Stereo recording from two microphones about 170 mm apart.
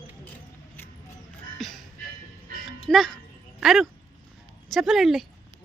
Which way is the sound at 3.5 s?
Centre (ahead or behind).